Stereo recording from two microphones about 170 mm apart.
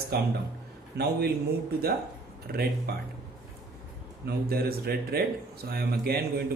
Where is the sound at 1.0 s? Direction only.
70° right (ahead or behind).